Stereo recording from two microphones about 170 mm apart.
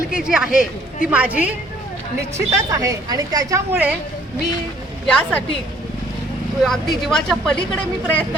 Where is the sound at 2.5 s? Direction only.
20° right (ahead or behind).